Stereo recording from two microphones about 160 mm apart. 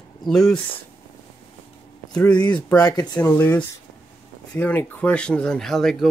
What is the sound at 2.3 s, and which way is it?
Speech, 25° left (ahead or behind).